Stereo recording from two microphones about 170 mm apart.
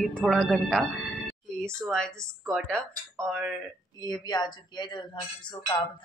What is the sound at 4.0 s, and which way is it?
Speech, 25° left (ahead or behind).